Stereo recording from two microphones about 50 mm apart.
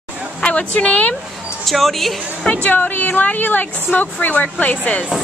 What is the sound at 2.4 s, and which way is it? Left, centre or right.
A woman's voice, left.